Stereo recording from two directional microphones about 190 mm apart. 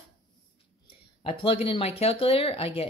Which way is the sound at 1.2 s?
30° left (ahead or behind).